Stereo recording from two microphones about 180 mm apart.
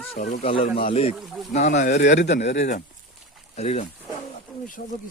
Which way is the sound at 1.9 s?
60° left (ahead or behind).